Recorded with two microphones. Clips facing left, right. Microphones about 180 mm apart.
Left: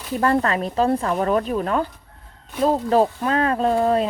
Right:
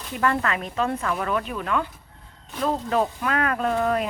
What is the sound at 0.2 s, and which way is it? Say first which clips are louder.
Speech: left 4 dB; 35° left (ahead or behind).